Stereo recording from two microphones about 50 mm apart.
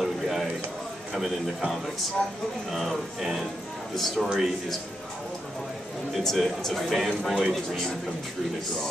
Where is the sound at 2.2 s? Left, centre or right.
Left.